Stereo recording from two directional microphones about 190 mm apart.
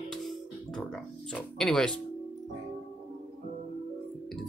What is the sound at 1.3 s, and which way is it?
Speech, 5° left (ahead or behind).